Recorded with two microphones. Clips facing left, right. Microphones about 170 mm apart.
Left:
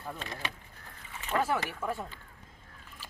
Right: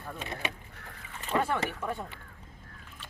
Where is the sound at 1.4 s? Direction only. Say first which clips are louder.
Right 1 dB; 5° left (ahead or behind).